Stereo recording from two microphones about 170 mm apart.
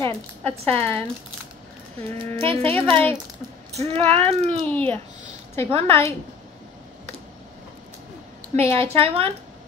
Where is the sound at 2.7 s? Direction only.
10° left (ahead or behind).